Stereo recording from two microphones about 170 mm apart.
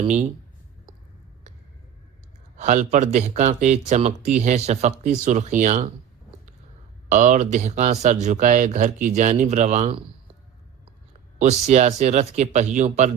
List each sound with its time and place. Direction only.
0.0 s speech: 40° right (ahead or behind)
2.6 s speech: 45° right (ahead or behind)
7.1 s speech: 45° right (ahead or behind)
11.3 s speech: 40° right (ahead or behind)